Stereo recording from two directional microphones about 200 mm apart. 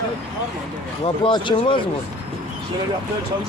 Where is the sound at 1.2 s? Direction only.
25° left (ahead or behind).